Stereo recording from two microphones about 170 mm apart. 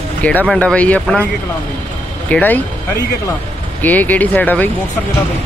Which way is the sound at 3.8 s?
10° left (ahead or behind).